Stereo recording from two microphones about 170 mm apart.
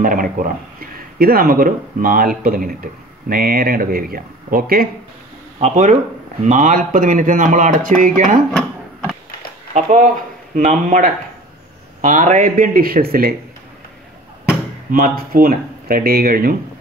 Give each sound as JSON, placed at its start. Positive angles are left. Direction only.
{"t": 0.0, "sound": "speech", "side_deg": -55}
{"t": 5.6, "sound": "speech", "side_deg": -45}
{"t": 9.8, "sound": "speech", "side_deg": -50}
{"t": 14.9, "sound": "speech", "side_deg": -55}